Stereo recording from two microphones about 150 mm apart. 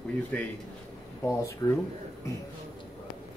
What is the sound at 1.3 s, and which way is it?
Speech, 20° left (ahead or behind).